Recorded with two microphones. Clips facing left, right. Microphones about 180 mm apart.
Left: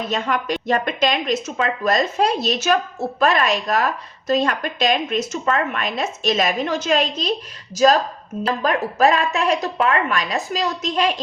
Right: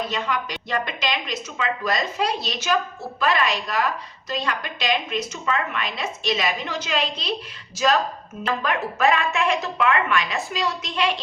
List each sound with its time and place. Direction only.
0.1 s a woman's voice: 50° left (ahead or behind)